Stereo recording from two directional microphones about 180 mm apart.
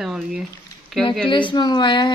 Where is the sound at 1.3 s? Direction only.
25° left (ahead or behind).